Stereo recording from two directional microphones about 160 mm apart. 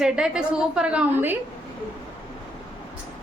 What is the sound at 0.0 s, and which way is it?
A woman's voice, 5° right (ahead or behind).